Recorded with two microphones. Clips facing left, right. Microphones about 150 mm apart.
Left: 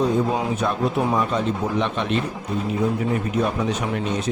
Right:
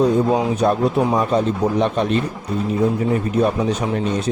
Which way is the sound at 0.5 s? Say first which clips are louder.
Right 5 dB; 35° right (ahead or behind).